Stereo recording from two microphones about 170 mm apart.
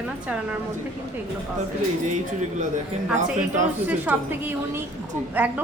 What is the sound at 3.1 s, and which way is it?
Speech, 45° right (ahead or behind).